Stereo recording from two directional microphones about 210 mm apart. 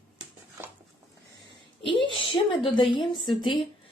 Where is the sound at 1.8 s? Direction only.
25° left (ahead or behind).